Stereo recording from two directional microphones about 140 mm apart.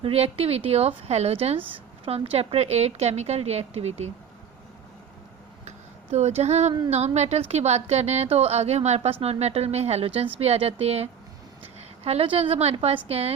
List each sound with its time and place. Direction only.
0.0 s a woman's voice: 45° right (ahead or behind)
5.6 s a sound: 55° right (ahead or behind)
6.9 s a woman's voice: 50° right (ahead or behind)